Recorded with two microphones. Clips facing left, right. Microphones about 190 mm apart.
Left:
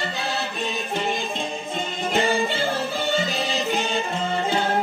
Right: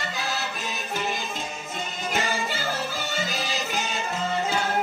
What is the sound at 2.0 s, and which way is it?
Music, 25° left (ahead or behind).